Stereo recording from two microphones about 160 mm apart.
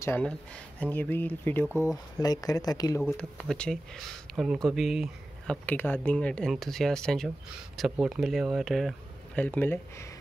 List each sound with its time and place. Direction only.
0.7 s speech: 10° left (ahead or behind)
1.7 s speech: 10° right (ahead or behind)
2.1 s speech: 25° left (ahead or behind)
3.0 s speech: centre (ahead or behind)
5.7 s speech: 10° left (ahead or behind)